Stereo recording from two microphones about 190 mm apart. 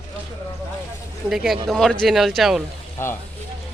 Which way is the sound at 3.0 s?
15° left (ahead or behind).